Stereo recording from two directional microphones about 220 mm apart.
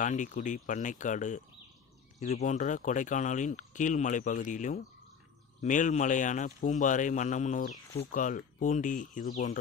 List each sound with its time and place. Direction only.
0.0 s speech: 35° left (ahead or behind)